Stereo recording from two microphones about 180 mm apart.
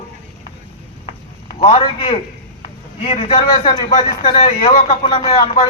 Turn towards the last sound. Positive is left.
turn(degrees=30)  # may be behind; listen again after turning